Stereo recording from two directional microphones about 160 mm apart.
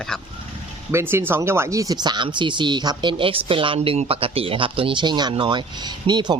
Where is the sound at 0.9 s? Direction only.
15° right (ahead or behind).